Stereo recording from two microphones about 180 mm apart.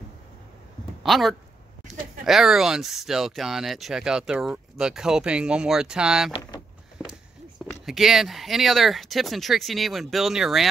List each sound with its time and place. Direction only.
1.0 s speech: centre (ahead or behind)
6.3 s power windows: 25° left (ahead or behind)
7.8 s speech: centre (ahead or behind)